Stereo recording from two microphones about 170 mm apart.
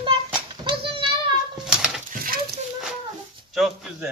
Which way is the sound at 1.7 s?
5° right (ahead or behind).